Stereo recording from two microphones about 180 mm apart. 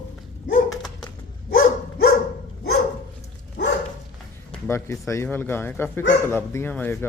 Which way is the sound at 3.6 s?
65° left (ahead or behind).